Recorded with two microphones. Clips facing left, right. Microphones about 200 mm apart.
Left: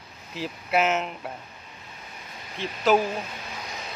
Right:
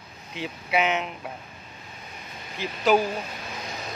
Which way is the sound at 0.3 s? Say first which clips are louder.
Left 1 dB; centre (ahead or behind).